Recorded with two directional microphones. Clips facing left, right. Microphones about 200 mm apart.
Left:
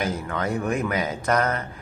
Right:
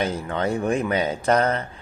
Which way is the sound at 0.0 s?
30° right (ahead or behind).